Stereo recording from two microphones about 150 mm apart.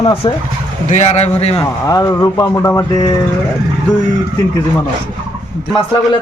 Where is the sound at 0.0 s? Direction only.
35° left (ahead or behind).